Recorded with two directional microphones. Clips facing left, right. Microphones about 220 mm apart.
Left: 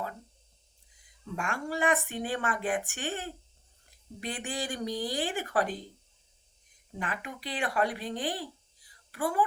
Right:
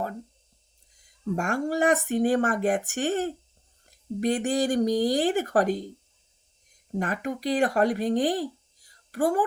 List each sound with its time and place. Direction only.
0.9 s speech: 45° right (ahead or behind)
6.9 s speech: 45° right (ahead or behind)